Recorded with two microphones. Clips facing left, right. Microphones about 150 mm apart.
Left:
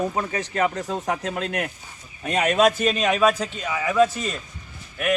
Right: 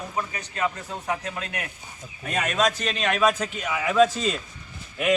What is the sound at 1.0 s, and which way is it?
Speech, 40° left (ahead or behind).